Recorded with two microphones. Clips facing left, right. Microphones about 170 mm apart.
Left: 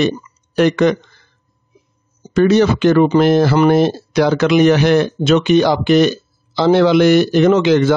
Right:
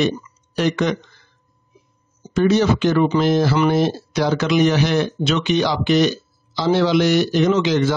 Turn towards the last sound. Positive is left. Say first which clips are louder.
# left 6 dB
turn(degrees=55)  # may be behind; listen again after turning